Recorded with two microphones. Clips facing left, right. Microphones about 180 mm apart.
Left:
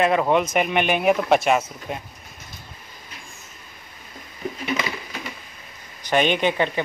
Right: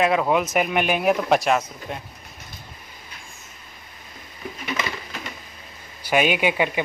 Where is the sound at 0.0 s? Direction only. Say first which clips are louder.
Left 1 dB; centre (ahead or behind).